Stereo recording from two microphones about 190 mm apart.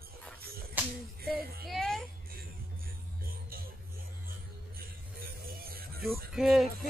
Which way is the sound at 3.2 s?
50° right (ahead or behind).